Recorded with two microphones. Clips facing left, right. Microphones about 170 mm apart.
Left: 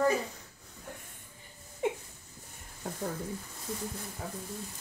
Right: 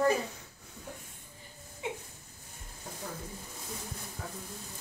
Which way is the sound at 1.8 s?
50° left (ahead or behind).